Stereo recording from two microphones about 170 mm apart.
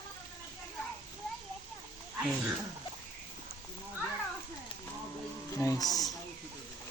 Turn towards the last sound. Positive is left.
turn(degrees=20)  # may be behind; listen again after turning